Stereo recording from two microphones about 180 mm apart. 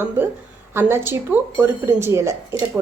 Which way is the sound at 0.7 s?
15° right (ahead or behind).